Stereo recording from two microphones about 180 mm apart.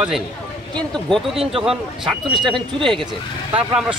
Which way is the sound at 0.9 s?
5° left (ahead or behind).